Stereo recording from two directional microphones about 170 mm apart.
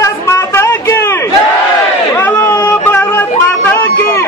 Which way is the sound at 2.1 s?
10° left (ahead or behind).